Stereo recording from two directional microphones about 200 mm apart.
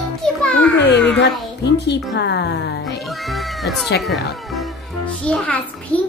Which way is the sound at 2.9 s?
Centre (ahead or behind).